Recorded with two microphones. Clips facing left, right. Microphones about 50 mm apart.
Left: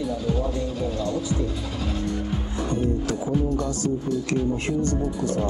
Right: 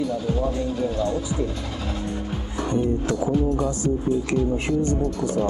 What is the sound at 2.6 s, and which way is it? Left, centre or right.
Speech, right.